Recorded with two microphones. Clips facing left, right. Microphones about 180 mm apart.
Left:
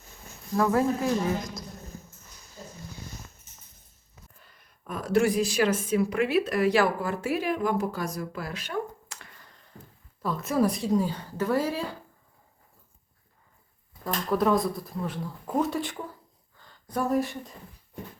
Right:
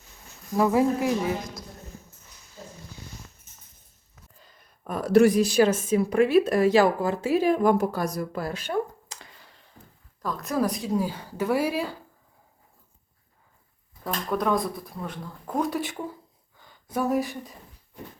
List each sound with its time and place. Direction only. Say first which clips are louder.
0.5 s a woman's voice: right 2 dB; 15° right (ahead or behind)
4.9 s a woman's voice: right 6 dB; 35° right (ahead or behind)
10.2 s speech: left 1 dB; centre (ahead or behind)
14.0 s speech: left 2 dB; centre (ahead or behind)
16.6 s a sound: right 1 dB; 10° right (ahead or behind)
17.0 s speech: right 1 dB; centre (ahead or behind)